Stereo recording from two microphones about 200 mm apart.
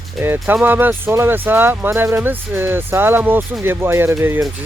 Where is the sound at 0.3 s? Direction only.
5° right (ahead or behind).